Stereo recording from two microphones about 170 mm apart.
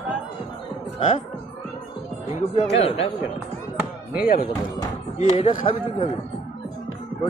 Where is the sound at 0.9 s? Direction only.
35° left (ahead or behind).